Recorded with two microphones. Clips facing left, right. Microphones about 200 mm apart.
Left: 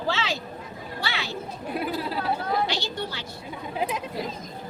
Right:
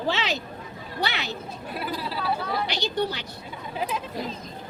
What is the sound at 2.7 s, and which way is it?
Speech, 20° right (ahead or behind).